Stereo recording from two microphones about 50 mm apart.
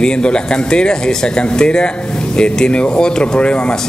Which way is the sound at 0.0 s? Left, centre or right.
Centre.